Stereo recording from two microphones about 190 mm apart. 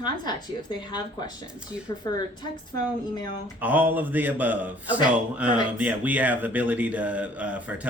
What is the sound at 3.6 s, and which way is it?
A man's voice, 10° right (ahead or behind).